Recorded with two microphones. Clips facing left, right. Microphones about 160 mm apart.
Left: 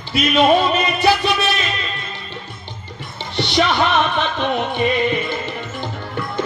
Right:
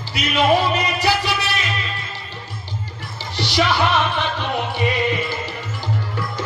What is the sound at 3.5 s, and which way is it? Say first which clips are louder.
Music: left 1 dB; 55° left (ahead or behind).